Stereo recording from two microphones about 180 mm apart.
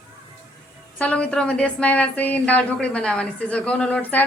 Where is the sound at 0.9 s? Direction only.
5° left (ahead or behind).